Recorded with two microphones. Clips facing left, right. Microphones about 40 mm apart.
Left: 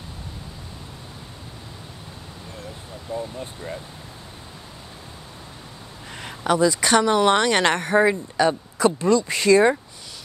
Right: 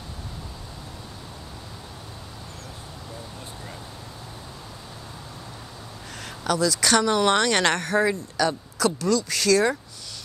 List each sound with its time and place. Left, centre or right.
3.1 s speech: left
6.1 s speech: left